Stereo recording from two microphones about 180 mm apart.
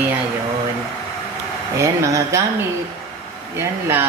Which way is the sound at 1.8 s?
15° right (ahead or behind).